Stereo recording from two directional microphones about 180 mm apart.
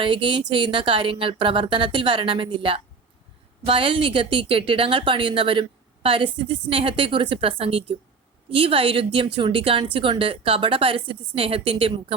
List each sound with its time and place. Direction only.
0.0 s a woman's voice: 30° right (ahead or behind)